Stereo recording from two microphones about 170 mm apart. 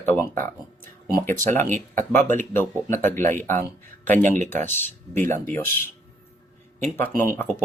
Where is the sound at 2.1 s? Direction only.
50° right (ahead or behind).